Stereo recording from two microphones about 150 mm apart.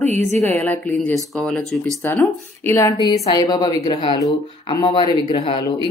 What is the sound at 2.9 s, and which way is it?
A woman's voice, 30° left (ahead or behind).